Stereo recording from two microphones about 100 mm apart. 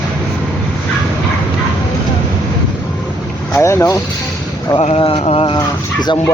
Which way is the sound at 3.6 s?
30° left (ahead or behind).